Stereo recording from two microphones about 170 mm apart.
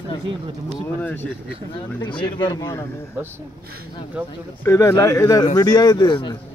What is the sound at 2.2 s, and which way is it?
Speech, 25° left (ahead or behind).